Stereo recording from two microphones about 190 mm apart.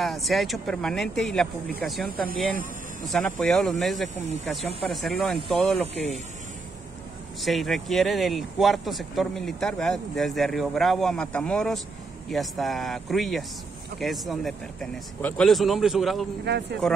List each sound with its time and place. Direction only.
0.0 s speech: centre (ahead or behind)
2.2 s speech: 45° right (ahead or behind)
3.1 s speech: 5° left (ahead or behind)
7.4 s speech: centre (ahead or behind)
16.5 s speech: 60° right (ahead or behind)